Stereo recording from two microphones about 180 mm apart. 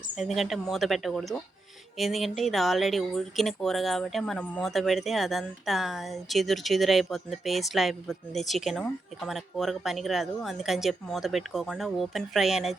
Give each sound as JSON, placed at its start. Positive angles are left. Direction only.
{"t": 0.2, "sound": "speech", "side_deg": 0}